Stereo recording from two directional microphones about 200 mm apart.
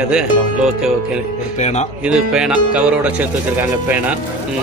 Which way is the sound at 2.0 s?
5° right (ahead or behind).